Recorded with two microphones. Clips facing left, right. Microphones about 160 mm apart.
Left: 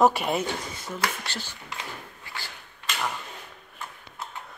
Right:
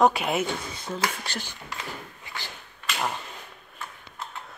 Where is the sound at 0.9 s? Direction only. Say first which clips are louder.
Right 1 dB; 15° right (ahead or behind).